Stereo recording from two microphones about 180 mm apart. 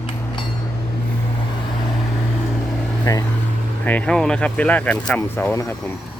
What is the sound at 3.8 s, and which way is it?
Speech, 5° left (ahead or behind).